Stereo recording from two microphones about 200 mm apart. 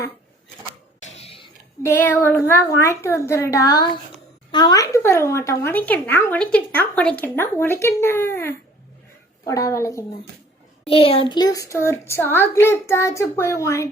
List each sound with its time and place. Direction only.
1.0 s a sound: 30° left (ahead or behind)
1.8 s speech: 10° left (ahead or behind)
10.8 s speech: 30° left (ahead or behind)